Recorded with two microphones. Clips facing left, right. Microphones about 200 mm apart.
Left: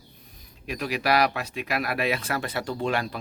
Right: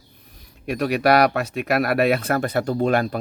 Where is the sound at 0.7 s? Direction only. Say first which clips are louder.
Right 7 dB; 60° right (ahead or behind).